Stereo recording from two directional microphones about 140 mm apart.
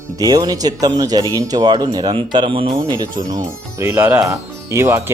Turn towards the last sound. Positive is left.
turn(degrees=-20)  # may be behind; listen again after turning